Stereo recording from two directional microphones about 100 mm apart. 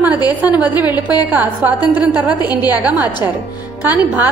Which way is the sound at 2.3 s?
45° left (ahead or behind).